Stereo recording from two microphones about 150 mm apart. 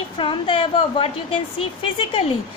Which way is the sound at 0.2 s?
35° left (ahead or behind).